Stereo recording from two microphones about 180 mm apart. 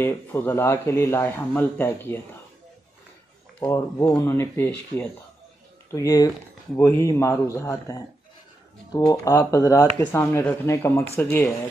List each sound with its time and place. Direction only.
0.0 s speech: 10° left (ahead or behind)
3.5 s speech: 20° left (ahead or behind)